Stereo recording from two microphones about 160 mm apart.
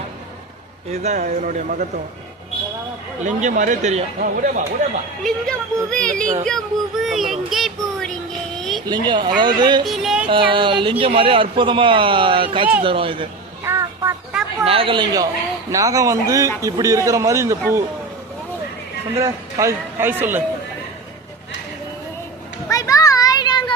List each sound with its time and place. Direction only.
0.9 s speech: 45° right (ahead or behind)
3.2 s speech: 50° right (ahead or behind)
4.2 s speech: 60° right (ahead or behind)
5.2 s speech: 5° left (ahead or behind)
6.4 s child singing: centre (ahead or behind)
8.9 s a man's voice: 30° right (ahead or behind)
9.8 s child singing: centre (ahead or behind)
10.2 s speech: 30° right (ahead or behind)
13.7 s a sound: 15° right (ahead or behind)
14.6 s a man's voice: 35° right (ahead or behind); by 17.8 s 15° right (ahead or behind)
19.2 s a man's voice: 20° right (ahead or behind)
22.7 s children playing: 20° left (ahead or behind)